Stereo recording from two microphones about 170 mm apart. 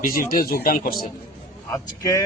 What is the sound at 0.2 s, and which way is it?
Speech, 55° left (ahead or behind).